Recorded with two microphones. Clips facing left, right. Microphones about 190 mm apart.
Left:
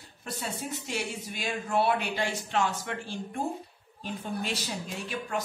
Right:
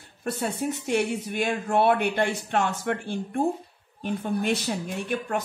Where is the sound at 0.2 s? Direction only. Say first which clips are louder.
Right 8 dB; 55° right (ahead or behind).